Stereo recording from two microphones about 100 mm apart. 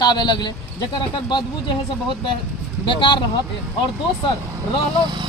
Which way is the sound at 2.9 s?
55° left (ahead or behind).